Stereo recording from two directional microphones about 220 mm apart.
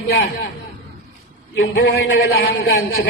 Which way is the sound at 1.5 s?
50° left (ahead or behind).